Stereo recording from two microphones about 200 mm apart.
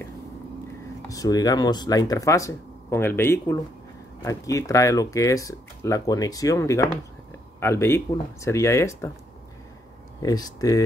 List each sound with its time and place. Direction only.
1.0 s speech: 15° left (ahead or behind)
10.2 s speech: 20° left (ahead or behind)